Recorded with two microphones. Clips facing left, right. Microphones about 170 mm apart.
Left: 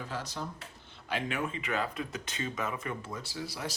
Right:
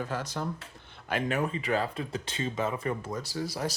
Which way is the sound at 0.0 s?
50° right (ahead or behind).